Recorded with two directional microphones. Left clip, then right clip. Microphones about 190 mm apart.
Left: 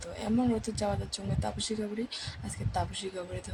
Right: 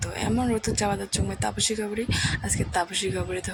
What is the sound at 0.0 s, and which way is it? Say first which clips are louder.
Speech: right 4 dB; 10° right (ahead or behind).